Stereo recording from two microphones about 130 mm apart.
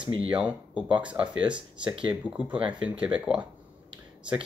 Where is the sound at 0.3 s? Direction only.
10° right (ahead or behind).